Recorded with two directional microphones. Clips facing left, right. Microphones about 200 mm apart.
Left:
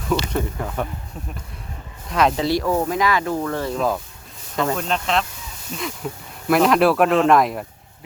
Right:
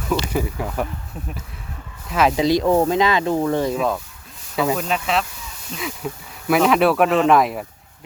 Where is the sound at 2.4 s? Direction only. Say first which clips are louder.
Right 4 dB; 20° right (ahead or behind).